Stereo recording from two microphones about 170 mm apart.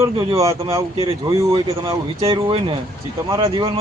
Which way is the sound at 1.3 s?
20° right (ahead or behind).